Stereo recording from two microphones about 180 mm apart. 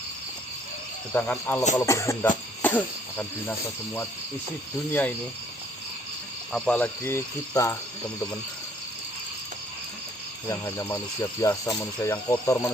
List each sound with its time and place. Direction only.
1.1 s speech: 10° left (ahead or behind)
4.9 s speech: 10° left (ahead or behind)
6.5 s speech: 5° left (ahead or behind)
10.5 s speech: 15° left (ahead or behind)